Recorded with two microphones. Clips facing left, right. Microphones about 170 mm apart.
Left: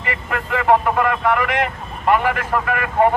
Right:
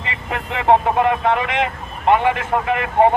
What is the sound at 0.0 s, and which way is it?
Speech, 25° right (ahead or behind).